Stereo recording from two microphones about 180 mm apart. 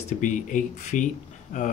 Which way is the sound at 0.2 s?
45° left (ahead or behind).